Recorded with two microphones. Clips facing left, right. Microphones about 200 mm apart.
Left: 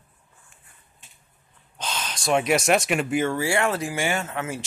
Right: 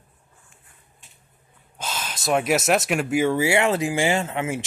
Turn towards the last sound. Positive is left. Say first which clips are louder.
# right 4 dB
turn(degrees=-25)  # may be behind; listen again after turning